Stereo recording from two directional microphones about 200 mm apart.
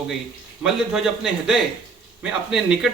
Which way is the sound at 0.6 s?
Centre (ahead or behind).